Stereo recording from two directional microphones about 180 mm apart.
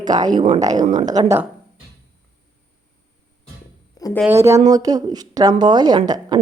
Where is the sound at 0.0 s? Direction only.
20° right (ahead or behind).